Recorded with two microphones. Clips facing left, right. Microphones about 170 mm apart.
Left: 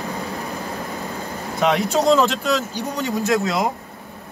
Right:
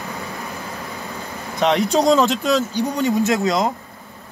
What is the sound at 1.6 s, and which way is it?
Speech, 5° left (ahead or behind).